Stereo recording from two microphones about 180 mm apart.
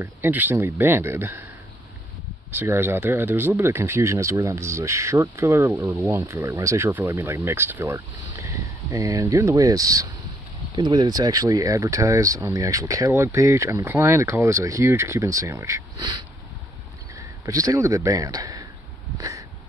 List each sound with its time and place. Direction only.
0.0 s speech: 10° right (ahead or behind)
2.5 s speech: 10° right (ahead or behind)
19.1 s a sound: 15° right (ahead or behind)